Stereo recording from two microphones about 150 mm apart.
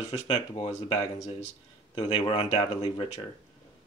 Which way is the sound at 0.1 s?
40° left (ahead or behind).